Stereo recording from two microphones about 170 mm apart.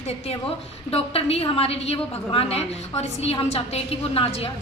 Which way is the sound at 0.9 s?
35° left (ahead or behind).